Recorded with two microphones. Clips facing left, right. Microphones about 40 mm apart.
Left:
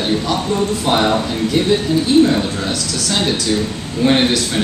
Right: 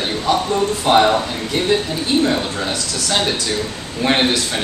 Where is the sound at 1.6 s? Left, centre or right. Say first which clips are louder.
Left 2 dB; right.